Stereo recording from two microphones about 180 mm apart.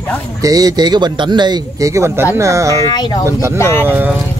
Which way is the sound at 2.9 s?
20° left (ahead or behind).